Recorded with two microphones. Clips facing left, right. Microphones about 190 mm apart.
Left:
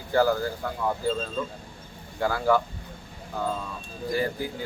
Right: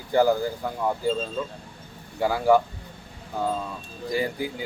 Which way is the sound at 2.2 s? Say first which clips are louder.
Right 3 dB; 10° right (ahead or behind).